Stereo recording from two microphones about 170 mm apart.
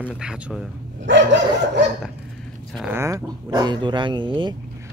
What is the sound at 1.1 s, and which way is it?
Dog, 90° right.